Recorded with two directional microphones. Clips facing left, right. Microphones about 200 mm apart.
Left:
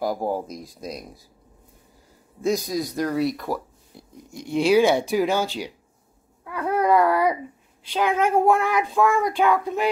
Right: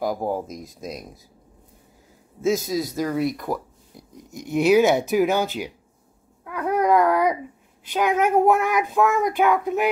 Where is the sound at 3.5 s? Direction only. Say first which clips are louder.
Right 1 dB; 20° right (ahead or behind).